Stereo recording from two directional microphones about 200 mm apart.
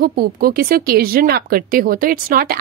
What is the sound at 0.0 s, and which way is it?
Speech, 50° right (ahead or behind).